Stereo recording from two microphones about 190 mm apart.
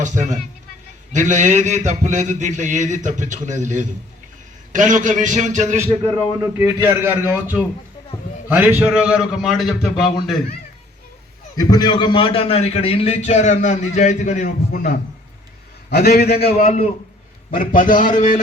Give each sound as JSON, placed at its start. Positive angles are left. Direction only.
{"t": 0.0, "sound": "a man's voice", "side_deg": -40}
{"t": 6.4, "sound": "a man's voice", "side_deg": -10}
{"t": 11.5, "sound": "a man's voice", "side_deg": 20}
{"t": 16.5, "sound": "a man's voice", "side_deg": 35}
{"t": 17.5, "sound": "a man's voice", "side_deg": 45}